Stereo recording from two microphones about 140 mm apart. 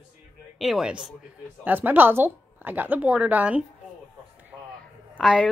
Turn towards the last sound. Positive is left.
turn(degrees=-5)  # may be behind; listen again after turning